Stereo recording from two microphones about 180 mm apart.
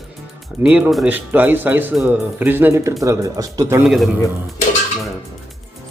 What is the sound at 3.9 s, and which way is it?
Speech, centre (ahead or behind).